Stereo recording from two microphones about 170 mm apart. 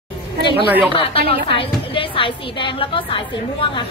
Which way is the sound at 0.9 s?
30° left (ahead or behind).